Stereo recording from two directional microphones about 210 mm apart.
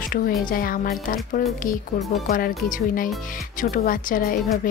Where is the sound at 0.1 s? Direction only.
40° left (ahead or behind).